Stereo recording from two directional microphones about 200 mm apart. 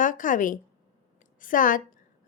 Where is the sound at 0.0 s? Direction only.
40° left (ahead or behind).